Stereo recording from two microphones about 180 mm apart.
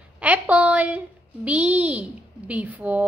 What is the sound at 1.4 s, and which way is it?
A child's voice, 5° right (ahead or behind).